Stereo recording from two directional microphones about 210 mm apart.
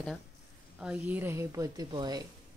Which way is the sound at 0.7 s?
10° right (ahead or behind).